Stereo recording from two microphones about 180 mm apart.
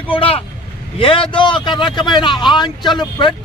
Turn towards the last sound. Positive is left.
turn(degrees=25)  # may be behind; listen again after turning